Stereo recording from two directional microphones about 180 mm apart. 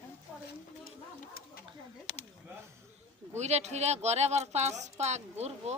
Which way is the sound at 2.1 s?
35° left (ahead or behind).